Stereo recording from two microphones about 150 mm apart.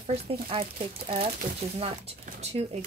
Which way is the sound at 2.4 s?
45° right (ahead or behind).